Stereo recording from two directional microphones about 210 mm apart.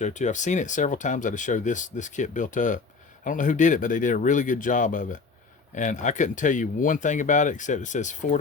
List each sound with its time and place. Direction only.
0.0 s speech: 35° left (ahead or behind)